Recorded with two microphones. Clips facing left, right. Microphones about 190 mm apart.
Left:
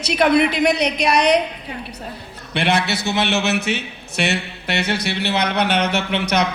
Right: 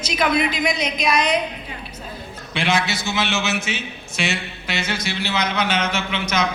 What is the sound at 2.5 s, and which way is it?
A woman's voice, 60° left (ahead or behind).